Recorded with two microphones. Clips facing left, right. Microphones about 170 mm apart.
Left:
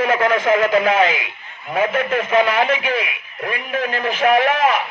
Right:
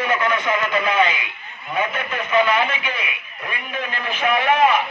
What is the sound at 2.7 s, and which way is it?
Speech, 90° left.